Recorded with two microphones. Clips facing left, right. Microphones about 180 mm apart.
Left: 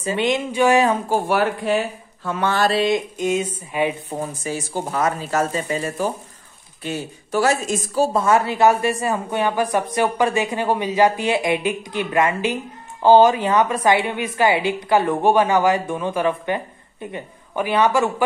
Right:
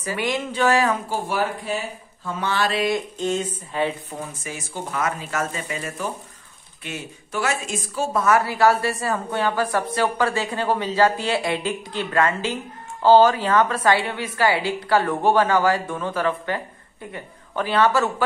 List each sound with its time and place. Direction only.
0.0 s speech: 25° left (ahead or behind)
1.1 s speech: 65° left (ahead or behind)
2.5 s speech: 40° left (ahead or behind)
3.2 s a woman's voice: 10° left (ahead or behind)
4.1 s a woman's voice: 30° left (ahead or behind); by 18.1 s 15° left (ahead or behind)